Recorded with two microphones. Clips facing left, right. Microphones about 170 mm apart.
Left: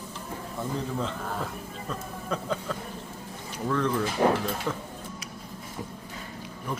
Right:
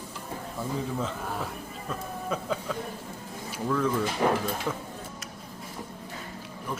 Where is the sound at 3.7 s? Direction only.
5° right (ahead or behind).